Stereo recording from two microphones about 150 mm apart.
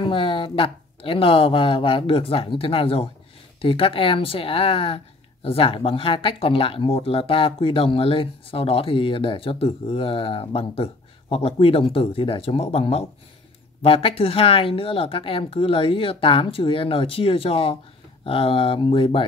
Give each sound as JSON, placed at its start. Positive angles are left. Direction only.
{"t": 0.0, "sound": "speech", "side_deg": 35}